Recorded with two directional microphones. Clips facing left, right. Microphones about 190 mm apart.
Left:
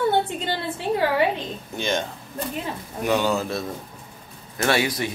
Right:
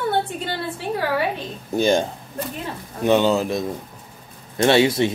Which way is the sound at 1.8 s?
35° right (ahead or behind).